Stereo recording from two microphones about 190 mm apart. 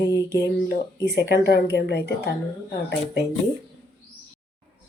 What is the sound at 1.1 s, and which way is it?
A woman's voice, 60° left (ahead or behind).